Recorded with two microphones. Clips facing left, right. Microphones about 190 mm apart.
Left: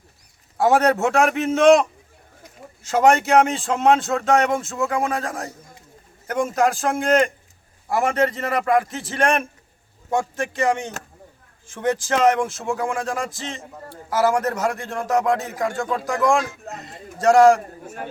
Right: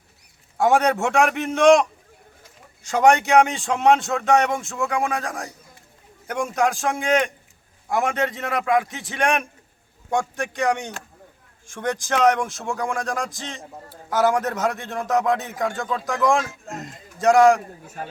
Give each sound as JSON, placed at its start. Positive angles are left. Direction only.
{"t": 0.5, "sound": "speech", "side_deg": 0}
{"t": 16.6, "sound": "speech", "side_deg": -45}
{"t": 17.2, "sound": "speech", "side_deg": 0}